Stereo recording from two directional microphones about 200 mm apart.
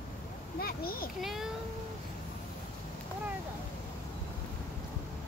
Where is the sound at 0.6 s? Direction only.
50° left (ahead or behind).